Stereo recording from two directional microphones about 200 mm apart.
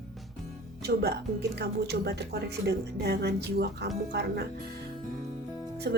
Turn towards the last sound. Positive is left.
turn(degrees=-55)  # may be behind; listen again after turning